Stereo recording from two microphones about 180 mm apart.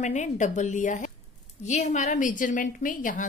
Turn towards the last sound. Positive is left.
turn(degrees=45)  # may be behind; listen again after turning